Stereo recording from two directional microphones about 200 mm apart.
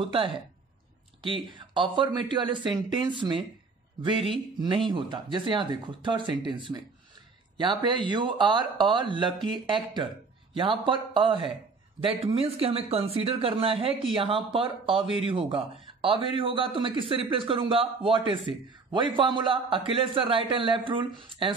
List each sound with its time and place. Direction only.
0.0 s a man's voice: 25° right (ahead or behind)